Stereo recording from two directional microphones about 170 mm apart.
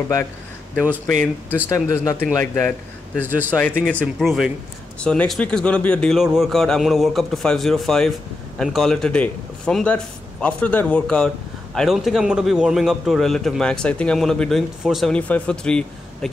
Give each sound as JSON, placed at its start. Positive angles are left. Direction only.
{"t": 1.7, "sound": "speech", "side_deg": 15}
{"t": 3.3, "sound": "speech", "side_deg": -10}
{"t": 3.8, "sound": "a man's voice", "side_deg": 5}